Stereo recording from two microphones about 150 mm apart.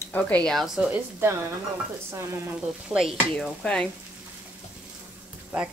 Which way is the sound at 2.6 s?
5° right (ahead or behind).